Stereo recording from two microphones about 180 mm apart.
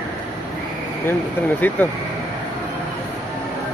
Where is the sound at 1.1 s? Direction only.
10° left (ahead or behind).